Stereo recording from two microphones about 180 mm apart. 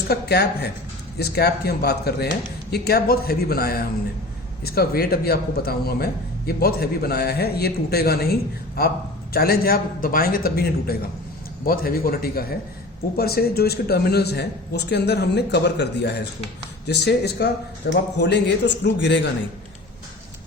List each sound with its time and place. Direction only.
0.1 s a man's voice: 65° left (ahead or behind)